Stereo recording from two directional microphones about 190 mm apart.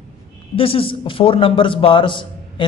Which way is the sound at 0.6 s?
30° left (ahead or behind).